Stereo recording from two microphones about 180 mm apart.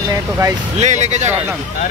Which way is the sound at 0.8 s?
40° right (ahead or behind).